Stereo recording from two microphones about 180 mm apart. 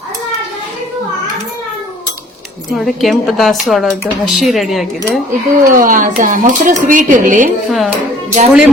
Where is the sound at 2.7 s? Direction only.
Centre (ahead or behind).